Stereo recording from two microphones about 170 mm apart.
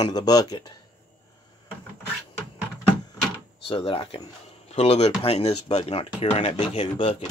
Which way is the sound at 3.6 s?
30° left (ahead or behind).